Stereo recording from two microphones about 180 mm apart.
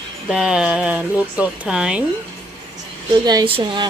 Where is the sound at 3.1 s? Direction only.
25° right (ahead or behind).